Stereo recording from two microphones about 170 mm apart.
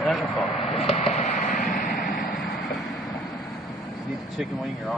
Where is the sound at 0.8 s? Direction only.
40° left (ahead or behind); by 2.1 s 55° left (ahead or behind).